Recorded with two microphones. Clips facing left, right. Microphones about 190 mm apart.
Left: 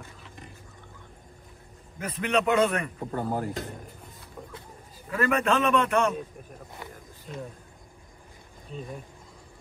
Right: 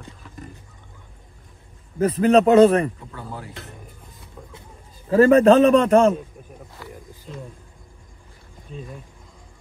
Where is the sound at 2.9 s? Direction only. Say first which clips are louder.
Left 7 dB; 45° left (ahead or behind).